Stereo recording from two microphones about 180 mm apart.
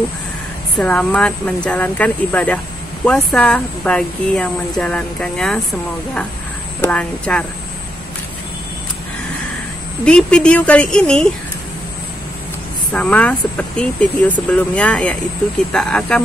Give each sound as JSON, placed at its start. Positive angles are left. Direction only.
{"t": 0.7, "sound": "speech", "side_deg": 5}
{"t": 6.8, "sound": "speech", "side_deg": 5}
{"t": 10.0, "sound": "speech", "side_deg": 5}
{"t": 12.9, "sound": "speech", "side_deg": 5}